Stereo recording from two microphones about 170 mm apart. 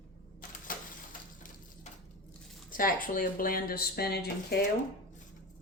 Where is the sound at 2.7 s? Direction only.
55° left (ahead or behind); by 4.7 s 70° left (ahead or behind).